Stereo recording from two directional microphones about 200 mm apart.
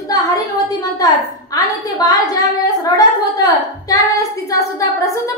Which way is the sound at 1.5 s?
20° left (ahead or behind).